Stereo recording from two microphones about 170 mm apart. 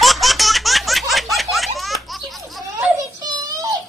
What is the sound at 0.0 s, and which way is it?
Laughter, centre (ahead or behind).